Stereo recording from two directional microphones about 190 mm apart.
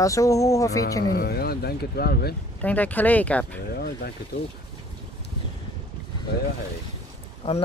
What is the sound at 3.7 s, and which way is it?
Speech, 55° left (ahead or behind).